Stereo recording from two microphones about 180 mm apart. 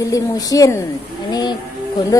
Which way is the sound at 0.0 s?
20° left (ahead or behind).